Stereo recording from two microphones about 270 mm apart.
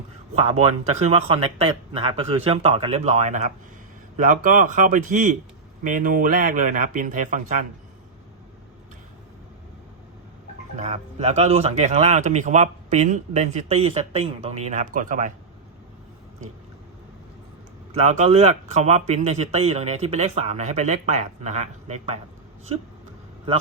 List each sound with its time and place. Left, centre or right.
0.3 s speech: right
10.8 s speech: right
17.9 s speech: right